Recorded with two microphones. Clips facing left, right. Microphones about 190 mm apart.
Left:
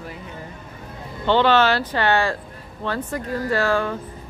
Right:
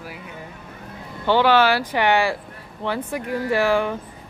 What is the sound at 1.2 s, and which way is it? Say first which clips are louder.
Speech: even; 10° right (ahead or behind).